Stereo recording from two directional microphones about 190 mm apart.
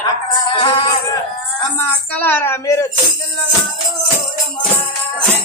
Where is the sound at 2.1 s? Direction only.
10° left (ahead or behind).